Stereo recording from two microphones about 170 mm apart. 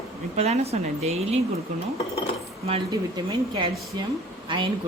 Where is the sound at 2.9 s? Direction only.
25° right (ahead or behind).